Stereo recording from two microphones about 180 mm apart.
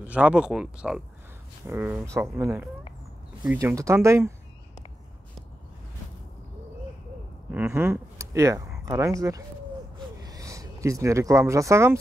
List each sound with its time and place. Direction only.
0.0 s speech: 5° right (ahead or behind)
7.5 s speech: 10° right (ahead or behind)
9.9 s a sound: 20° right (ahead or behind)